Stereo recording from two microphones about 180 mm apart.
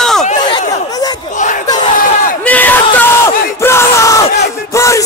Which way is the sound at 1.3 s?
45° left (ahead or behind).